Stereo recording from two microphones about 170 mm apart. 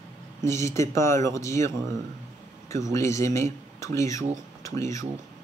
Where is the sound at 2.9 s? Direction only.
15° left (ahead or behind).